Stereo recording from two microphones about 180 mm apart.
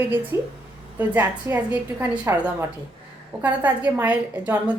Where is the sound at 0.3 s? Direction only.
15° right (ahead or behind).